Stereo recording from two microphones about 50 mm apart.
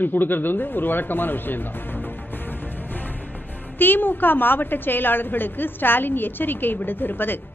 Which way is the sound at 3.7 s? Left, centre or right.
Left.